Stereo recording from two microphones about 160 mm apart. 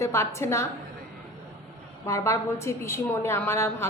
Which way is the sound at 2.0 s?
20° left (ahead or behind).